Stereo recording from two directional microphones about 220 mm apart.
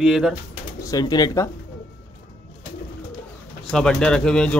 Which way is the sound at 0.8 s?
15° left (ahead or behind).